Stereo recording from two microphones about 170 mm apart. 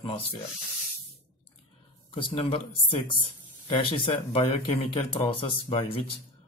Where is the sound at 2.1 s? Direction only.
30° left (ahead or behind).